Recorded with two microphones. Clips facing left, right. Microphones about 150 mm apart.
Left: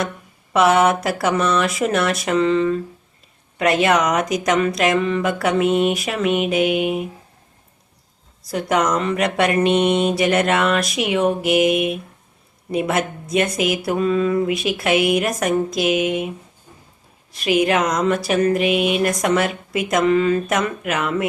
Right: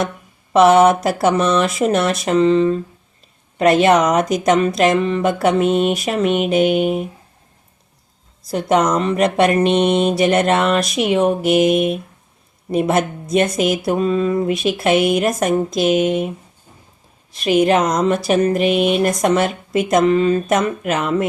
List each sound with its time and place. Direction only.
0.5 s speech: 25° right (ahead or behind)
6.5 s mantra: 30° right (ahead or behind)
8.4 s speech: 25° right (ahead or behind)
17.4 s mantra: 40° right (ahead or behind)
17.7 s speech: 25° right (ahead or behind)
18.7 s a sound: 10° left (ahead or behind)
18.9 s speech: 30° right (ahead or behind)